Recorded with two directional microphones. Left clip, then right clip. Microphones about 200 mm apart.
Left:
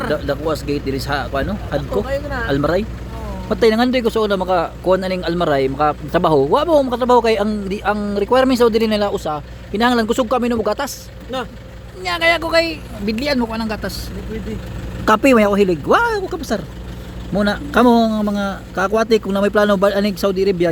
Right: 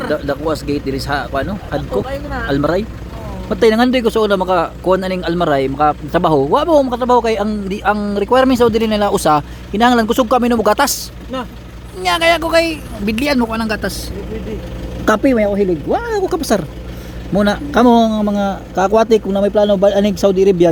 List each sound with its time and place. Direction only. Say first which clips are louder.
0.1 s speech: right 3 dB; centre (ahead or behind)
3.6 s speech: right 3 dB; 10° right (ahead or behind)
9.1 s speech: right 9 dB; 25° right (ahead or behind)
9.7 s speech: right 4 dB; 5° right (ahead or behind)
12.0 s speech: right 3 dB; 5° right (ahead or behind)
15.2 s speech: left 1 dB; 20° left (ahead or behind)
16.1 s speech: right 6 dB; 15° right (ahead or behind)
19.4 s speech: right 2 dB; 10° left (ahead or behind)
19.9 s speech: right 5 dB; 5° right (ahead or behind)